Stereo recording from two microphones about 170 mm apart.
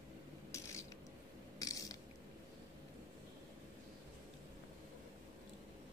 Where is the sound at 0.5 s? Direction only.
15° left (ahead or behind).